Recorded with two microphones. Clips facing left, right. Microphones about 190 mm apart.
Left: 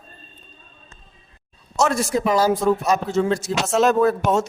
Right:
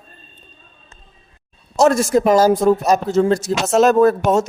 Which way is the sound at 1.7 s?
40° right (ahead or behind).